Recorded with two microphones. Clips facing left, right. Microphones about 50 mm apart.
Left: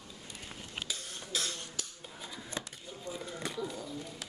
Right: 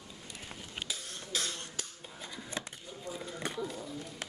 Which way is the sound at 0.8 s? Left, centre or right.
Centre.